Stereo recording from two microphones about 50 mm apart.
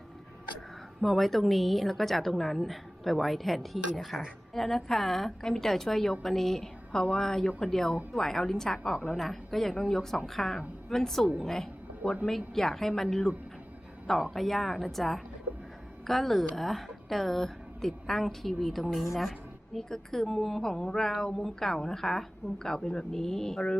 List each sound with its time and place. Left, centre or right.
1.0 s a woman's voice: centre